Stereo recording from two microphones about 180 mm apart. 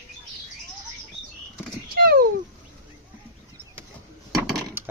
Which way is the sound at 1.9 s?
60° right (ahead or behind).